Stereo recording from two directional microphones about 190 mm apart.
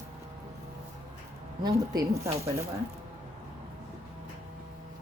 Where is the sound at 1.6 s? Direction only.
20° right (ahead or behind).